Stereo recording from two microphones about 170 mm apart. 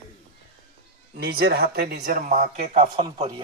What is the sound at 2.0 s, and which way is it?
Speech, 45° right (ahead or behind).